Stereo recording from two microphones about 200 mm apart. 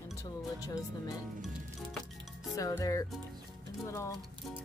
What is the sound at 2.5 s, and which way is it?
Speech, 15° left (ahead or behind).